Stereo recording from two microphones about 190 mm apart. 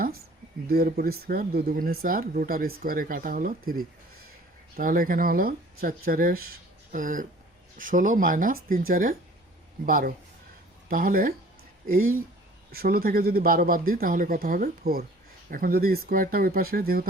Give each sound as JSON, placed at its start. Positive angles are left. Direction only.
{"t": 0.7, "sound": "speech", "side_deg": -50}